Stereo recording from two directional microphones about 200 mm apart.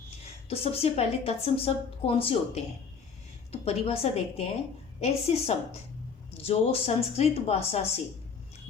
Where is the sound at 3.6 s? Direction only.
30° left (ahead or behind).